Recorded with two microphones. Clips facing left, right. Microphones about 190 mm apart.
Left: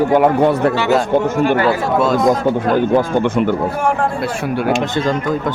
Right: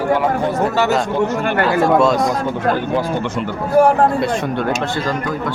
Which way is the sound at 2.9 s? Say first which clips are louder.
Left 5 dB; 55° left (ahead or behind).